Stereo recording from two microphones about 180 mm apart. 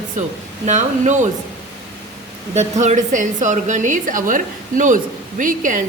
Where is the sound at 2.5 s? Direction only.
40° right (ahead or behind).